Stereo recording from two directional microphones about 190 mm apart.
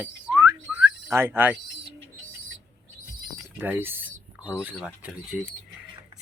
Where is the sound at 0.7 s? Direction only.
10° right (ahead or behind).